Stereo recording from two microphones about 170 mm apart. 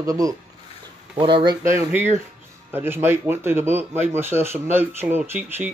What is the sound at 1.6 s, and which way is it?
Speech, 15° right (ahead or behind).